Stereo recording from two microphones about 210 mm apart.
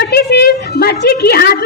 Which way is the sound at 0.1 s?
50° left (ahead or behind).